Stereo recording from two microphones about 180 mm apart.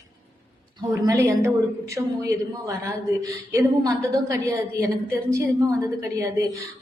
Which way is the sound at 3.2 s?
15° right (ahead or behind).